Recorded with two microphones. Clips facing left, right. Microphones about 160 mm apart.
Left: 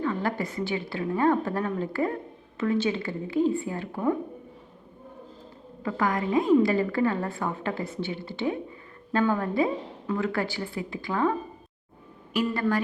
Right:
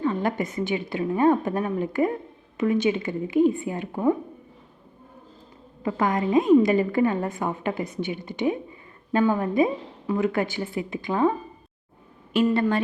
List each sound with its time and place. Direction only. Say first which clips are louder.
0.0 s a woman's voice: right 3 dB; 20° right (ahead or behind)
5.8 s a woman's voice: right 3 dB; 20° right (ahead or behind)